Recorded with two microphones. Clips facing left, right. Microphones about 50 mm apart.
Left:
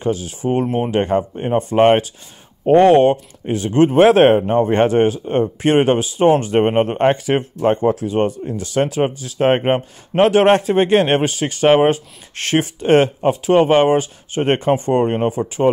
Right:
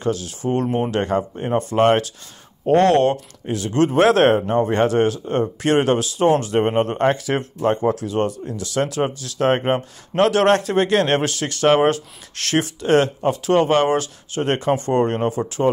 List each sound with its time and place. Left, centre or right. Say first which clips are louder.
0.0 s speech: left 2 dB; centre
3.4 s speech: left 4 dB; left
14.9 s speech: left 2 dB; centre